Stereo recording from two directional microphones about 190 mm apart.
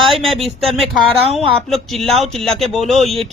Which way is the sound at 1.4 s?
Centre (ahead or behind).